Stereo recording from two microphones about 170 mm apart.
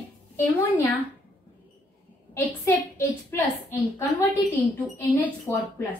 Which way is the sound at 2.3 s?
15° left (ahead or behind).